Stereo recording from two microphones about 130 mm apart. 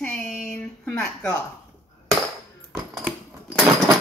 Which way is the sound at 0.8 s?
5° left (ahead or behind).